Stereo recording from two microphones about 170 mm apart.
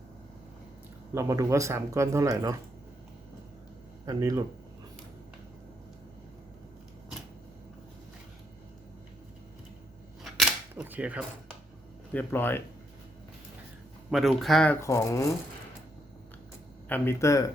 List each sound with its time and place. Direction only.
1.1 s speech: 15° right (ahead or behind)
4.0 s speech: 20° right (ahead or behind)
10.3 s a sound: centre (ahead or behind)
10.8 s speech: 10° right (ahead or behind)
12.1 s speech: 10° left (ahead or behind)
14.1 s speech: centre (ahead or behind)
14.8 s speech: 15° left (ahead or behind)
16.9 s speech: 15° left (ahead or behind)